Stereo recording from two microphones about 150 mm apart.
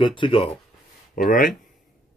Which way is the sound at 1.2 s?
65° left (ahead or behind).